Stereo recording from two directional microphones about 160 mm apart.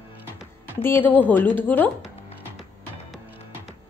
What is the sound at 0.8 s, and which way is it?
A woman's voice, 10° left (ahead or behind).